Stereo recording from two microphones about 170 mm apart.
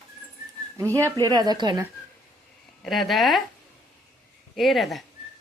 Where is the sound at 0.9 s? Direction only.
20° right (ahead or behind).